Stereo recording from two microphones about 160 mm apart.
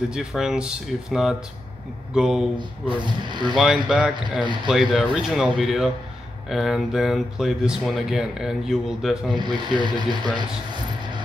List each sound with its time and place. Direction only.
0.1 s speech: 5° right (ahead or behind)
2.5 s speech: 30° right (ahead or behind)
3.5 s speech: 5° right (ahead or behind)
9.3 s speech: 30° right (ahead or behind)